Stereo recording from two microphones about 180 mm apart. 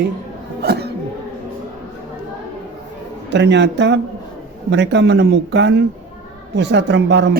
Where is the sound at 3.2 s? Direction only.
75° right (ahead or behind).